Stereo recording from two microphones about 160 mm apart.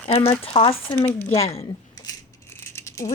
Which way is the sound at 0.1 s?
40° left (ahead or behind).